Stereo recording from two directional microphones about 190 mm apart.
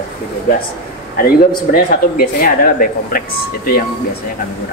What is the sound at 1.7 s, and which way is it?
Speech, 50° left (ahead or behind).